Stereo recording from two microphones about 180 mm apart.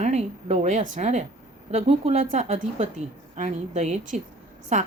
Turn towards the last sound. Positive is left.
turn(degrees=-40)  # may be behind; listen again after turning